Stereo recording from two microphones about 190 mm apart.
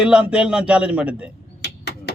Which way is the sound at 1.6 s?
60° left (ahead or behind).